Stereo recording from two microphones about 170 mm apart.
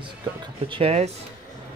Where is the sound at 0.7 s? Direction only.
35° right (ahead or behind).